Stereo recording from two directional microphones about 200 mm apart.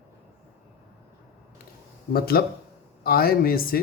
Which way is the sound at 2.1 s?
50° left (ahead or behind).